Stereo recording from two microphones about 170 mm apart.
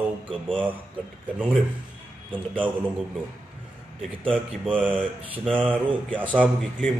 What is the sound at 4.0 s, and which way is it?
A man's voice, 5° left (ahead or behind).